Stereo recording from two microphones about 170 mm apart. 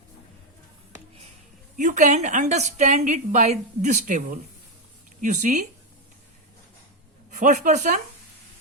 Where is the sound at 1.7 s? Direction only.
45° right (ahead or behind).